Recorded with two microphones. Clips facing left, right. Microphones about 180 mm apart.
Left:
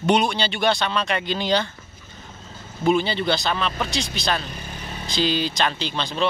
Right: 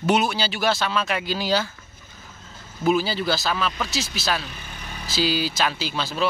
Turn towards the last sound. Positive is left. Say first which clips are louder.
# left 1 dB
turn(degrees=-5)  # may be behind; listen again after turning